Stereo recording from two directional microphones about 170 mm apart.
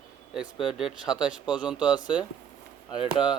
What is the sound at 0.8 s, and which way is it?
Speech, 5° right (ahead or behind).